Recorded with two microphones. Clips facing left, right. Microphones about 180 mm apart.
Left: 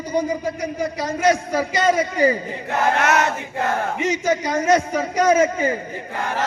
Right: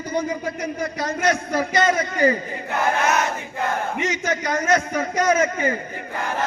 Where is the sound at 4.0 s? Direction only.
10° left (ahead or behind).